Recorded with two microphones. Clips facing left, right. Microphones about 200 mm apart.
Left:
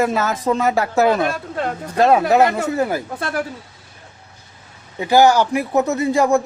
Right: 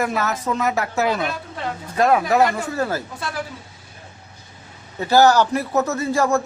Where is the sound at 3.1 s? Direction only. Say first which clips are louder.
Left 5 dB; 55° left (ahead or behind).